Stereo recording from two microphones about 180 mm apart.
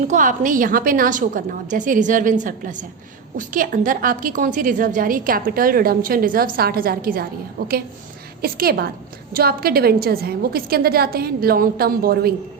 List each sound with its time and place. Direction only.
0.1 s a woman's voice: 45° right (ahead or behind)